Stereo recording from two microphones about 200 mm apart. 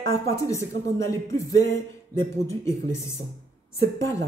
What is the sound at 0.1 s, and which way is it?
Speech, 15° left (ahead or behind).